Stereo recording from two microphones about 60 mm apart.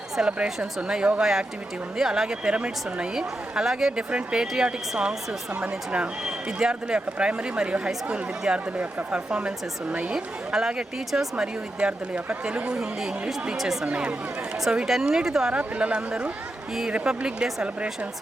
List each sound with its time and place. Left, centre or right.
0.3 s speech: centre
10.2 s speech: centre
11.8 s speech: centre